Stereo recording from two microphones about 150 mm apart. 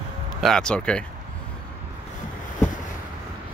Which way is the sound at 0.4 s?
5° left (ahead or behind).